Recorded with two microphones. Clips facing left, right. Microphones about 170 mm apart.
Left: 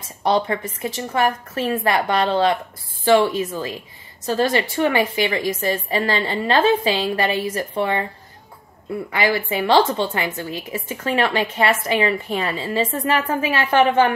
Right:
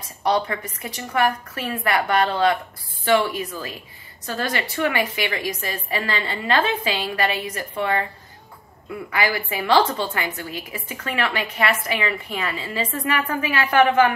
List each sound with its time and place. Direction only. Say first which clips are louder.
0.7 s a woman's voice: even; 25° left (ahead or behind)
9.1 s a woman's voice: left 3 dB; 25° left (ahead or behind)